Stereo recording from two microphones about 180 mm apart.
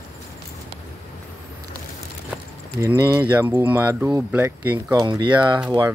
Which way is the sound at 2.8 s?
20° right (ahead or behind).